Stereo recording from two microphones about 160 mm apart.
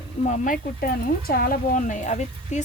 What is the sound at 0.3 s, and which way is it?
A woman's voice, 55° left (ahead or behind).